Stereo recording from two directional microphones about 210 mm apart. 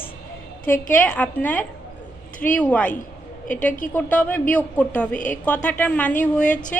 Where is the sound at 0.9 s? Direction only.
10° left (ahead or behind).